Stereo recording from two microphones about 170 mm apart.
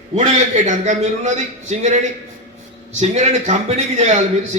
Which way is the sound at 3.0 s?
40° right (ahead or behind).